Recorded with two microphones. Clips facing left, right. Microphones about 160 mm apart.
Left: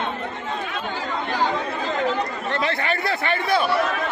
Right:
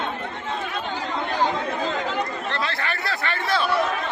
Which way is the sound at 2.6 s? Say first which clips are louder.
Left 4 dB; 20° left (ahead or behind).